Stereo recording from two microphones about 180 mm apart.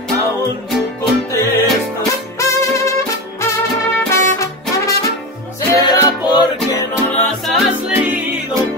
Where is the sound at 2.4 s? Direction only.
15° left (ahead or behind).